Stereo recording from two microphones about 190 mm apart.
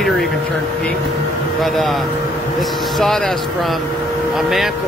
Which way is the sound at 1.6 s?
Centre (ahead or behind).